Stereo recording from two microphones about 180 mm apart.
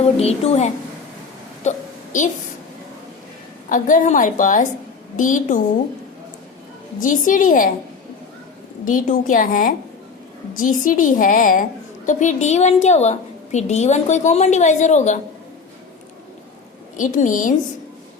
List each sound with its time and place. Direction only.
0.2 s a woman's voice: 35° left (ahead or behind)
3.7 s a woman's voice: 45° left (ahead or behind)
7.0 s a woman's voice: 45° left (ahead or behind)
8.8 s a woman's voice: 50° left (ahead or behind)
17.0 s a woman's voice: 45° left (ahead or behind)